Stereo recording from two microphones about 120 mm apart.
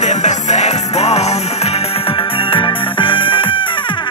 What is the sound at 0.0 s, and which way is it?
Music, 75° left (ahead or behind).